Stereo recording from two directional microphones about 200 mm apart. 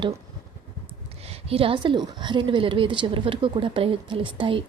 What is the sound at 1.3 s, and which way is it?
Speech, 30° right (ahead or behind).